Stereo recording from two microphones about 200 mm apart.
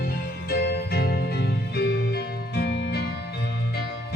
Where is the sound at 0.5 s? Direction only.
55° left (ahead or behind).